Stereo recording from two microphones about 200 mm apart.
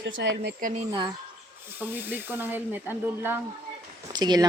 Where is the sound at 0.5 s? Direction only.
40° right (ahead or behind).